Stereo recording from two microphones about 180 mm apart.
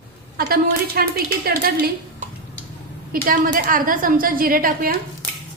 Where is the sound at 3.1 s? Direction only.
55° right (ahead or behind).